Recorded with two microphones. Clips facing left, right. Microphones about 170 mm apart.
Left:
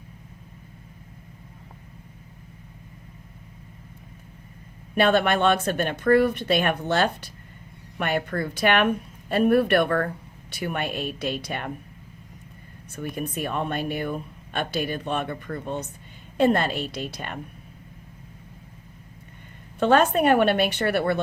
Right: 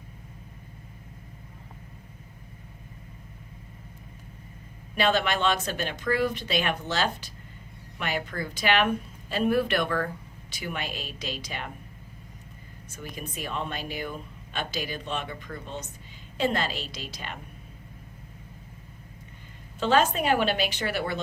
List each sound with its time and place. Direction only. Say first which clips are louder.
4.9 s a woman's voice: left 5 dB; 55° left (ahead or behind)
12.9 s a woman's voice: left 8 dB; 60° left (ahead or behind)
19.8 s a woman's voice: left 5 dB; 60° left (ahead or behind)